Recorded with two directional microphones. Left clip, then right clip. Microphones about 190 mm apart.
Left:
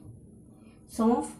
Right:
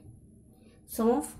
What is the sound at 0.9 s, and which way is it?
Speech, 50° right (ahead or behind).